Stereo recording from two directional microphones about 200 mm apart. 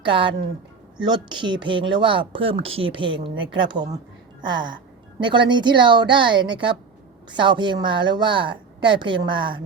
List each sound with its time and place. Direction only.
0.0 s speech: 25° right (ahead or behind)